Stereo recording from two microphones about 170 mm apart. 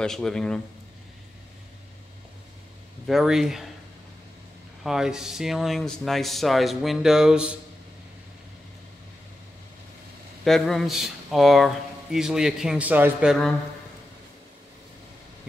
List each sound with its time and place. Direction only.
0.0 s speech: 5° left (ahead or behind)
3.1 s speech: centre (ahead or behind)
4.8 s speech: 5° right (ahead or behind)
10.4 s speech: centre (ahead or behind)